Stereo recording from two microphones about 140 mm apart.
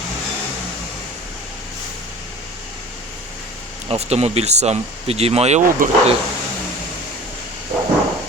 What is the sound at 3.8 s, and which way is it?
Speech, 50° right (ahead or behind).